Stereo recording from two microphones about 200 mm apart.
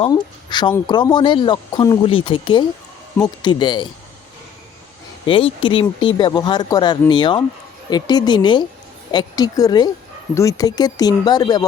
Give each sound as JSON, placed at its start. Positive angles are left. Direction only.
{"t": 0.0, "sound": "speech", "side_deg": 20}
{"t": 5.2, "sound": "speech", "side_deg": 25}